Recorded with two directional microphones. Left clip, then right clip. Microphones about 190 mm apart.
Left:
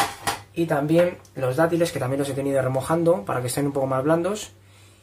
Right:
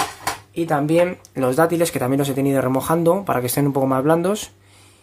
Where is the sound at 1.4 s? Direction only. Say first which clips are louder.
Right 4 dB; 55° right (ahead or behind); by 4.8 s 40° right (ahead or behind).